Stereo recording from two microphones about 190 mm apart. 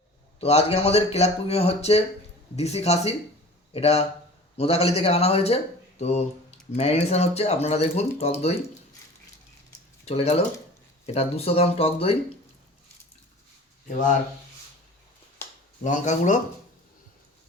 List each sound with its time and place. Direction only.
0.3 s speech: 35° left (ahead or behind)
10.1 s speech: 30° left (ahead or behind)
15.8 s speech: 40° left (ahead or behind)